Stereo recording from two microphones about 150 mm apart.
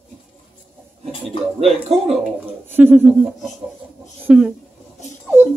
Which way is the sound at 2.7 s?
15° right (ahead or behind).